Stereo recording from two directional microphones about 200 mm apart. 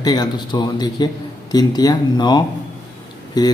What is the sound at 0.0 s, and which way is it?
Speech, 20° left (ahead or behind).